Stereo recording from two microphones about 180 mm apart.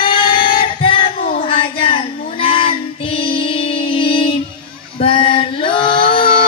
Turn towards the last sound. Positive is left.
turn(degrees=30)  # may be behind; listen again after turning